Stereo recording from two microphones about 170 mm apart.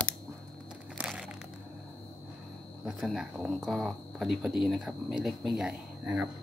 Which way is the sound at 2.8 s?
Centre (ahead or behind).